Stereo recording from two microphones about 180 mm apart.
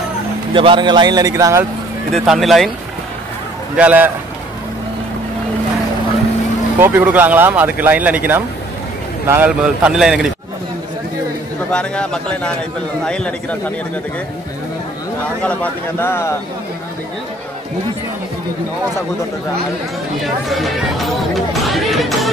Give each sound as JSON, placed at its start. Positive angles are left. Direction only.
{"t": 0.5, "sound": "speech", "side_deg": -25}
{"t": 2.1, "sound": "a man's voice", "side_deg": 0}
{"t": 3.7, "sound": "speech", "side_deg": -10}
{"t": 6.8, "sound": "a man's voice", "side_deg": -10}
{"t": 11.7, "sound": "a man's voice", "side_deg": 5}
{"t": 15.4, "sound": "a man's voice", "side_deg": 10}
{"t": 20.4, "sound": "a man's voice", "side_deg": 0}
{"t": 21.5, "sound": "chatter", "side_deg": 0}